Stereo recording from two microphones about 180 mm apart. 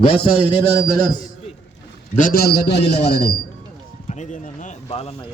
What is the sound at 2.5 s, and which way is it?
Speech, 65° left (ahead or behind).